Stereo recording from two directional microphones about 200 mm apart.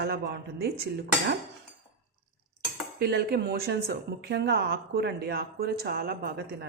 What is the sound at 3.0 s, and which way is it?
A woman's voice, 50° right (ahead or behind).